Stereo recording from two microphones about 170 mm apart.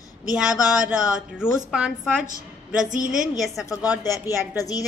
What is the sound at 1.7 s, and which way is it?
Speech, 5° right (ahead or behind).